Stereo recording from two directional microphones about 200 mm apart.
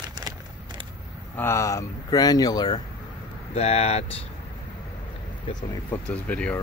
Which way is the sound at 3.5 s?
30° left (ahead or behind).